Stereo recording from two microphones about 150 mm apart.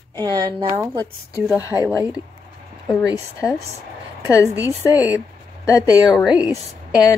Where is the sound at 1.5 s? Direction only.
20° left (ahead or behind).